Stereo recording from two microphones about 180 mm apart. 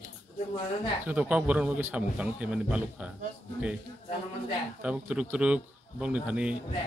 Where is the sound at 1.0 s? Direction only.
10° right (ahead or behind).